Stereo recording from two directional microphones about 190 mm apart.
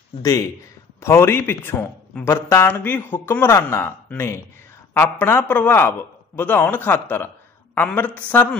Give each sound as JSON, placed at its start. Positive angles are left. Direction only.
{"t": 0.2, "sound": "a man's voice", "side_deg": 15}